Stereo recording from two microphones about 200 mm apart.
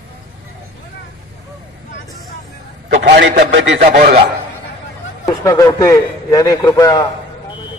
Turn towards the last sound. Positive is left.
turn(degrees=15)  # may be behind; listen again after turning